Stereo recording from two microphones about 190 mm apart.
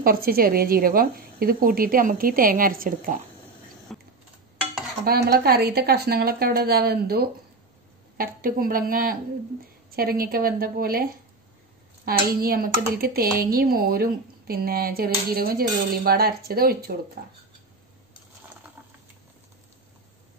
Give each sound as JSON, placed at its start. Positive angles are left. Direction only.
{"t": 0.0, "sound": "a woman's voice", "side_deg": -50}
{"t": 3.9, "sound": "a sound", "side_deg": 0}
{"t": 5.0, "sound": "a woman's voice", "side_deg": -55}